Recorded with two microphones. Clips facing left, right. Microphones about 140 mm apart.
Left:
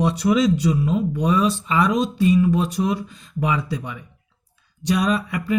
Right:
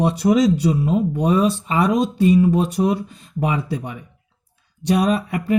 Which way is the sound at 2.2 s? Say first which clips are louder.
Right 3 dB; 35° right (ahead or behind).